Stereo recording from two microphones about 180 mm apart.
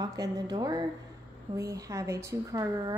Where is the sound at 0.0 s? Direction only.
20° right (ahead or behind).